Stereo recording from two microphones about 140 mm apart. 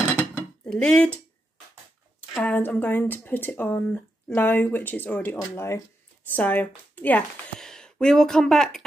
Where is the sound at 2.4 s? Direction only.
10° left (ahead or behind).